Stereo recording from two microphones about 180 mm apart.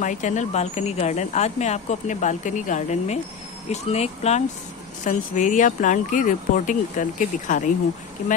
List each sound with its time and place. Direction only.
0.0 s speech: 45° left (ahead or behind)